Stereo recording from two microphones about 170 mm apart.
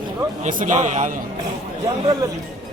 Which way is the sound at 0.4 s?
50° right (ahead or behind).